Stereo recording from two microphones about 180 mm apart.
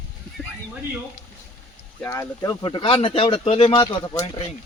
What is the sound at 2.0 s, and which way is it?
Speech, 15° left (ahead or behind).